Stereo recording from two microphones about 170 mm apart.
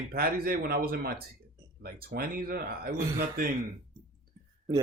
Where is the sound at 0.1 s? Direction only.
60° right (ahead or behind).